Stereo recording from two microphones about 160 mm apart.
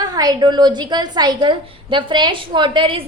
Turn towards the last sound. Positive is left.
turn(degrees=-30)  # may be behind; listen again after turning